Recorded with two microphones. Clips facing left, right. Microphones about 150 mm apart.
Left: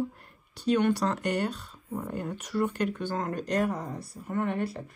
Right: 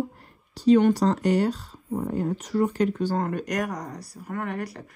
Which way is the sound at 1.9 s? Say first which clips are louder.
Right 7 dB; 35° right (ahead or behind).